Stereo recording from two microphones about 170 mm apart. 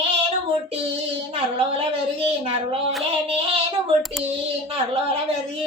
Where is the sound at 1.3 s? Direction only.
35° right (ahead or behind).